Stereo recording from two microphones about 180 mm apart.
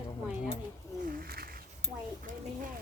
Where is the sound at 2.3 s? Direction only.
45° right (ahead or behind).